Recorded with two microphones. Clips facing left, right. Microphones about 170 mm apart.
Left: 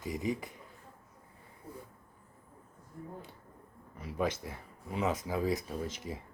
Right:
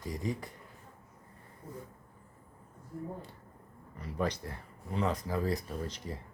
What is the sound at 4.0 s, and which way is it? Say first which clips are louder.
Speech: even; 5° left (ahead or behind).